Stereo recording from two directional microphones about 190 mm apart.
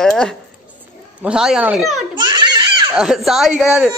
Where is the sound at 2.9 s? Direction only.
Centre (ahead or behind).